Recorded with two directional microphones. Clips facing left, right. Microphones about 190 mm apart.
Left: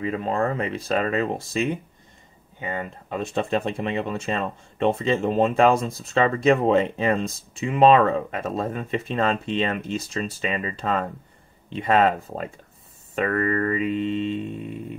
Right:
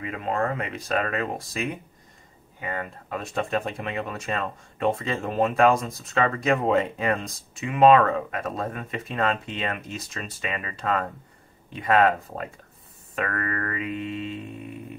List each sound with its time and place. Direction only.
0.0 s speech: 30° left (ahead or behind)